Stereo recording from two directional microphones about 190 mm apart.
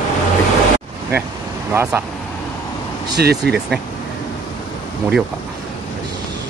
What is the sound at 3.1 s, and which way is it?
Speech, 60° right (ahead or behind).